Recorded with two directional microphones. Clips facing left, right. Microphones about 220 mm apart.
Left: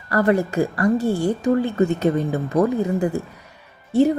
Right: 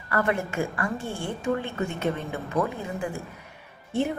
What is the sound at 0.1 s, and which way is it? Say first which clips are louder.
A woman's voice: left 8 dB; 35° left (ahead or behind).